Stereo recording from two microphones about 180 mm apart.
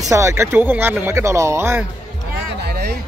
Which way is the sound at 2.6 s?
65° right (ahead or behind).